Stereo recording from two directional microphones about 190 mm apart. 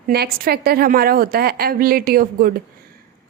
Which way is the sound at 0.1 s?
55° right (ahead or behind).